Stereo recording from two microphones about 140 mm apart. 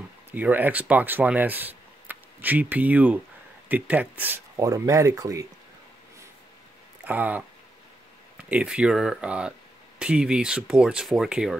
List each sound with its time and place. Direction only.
0.3 s speech: 15° right (ahead or behind)
4.6 s speech: 25° right (ahead or behind)
7.1 s speech: 10° right (ahead or behind)